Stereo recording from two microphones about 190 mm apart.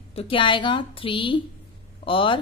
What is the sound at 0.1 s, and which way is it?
A woman's voice, 30° left (ahead or behind).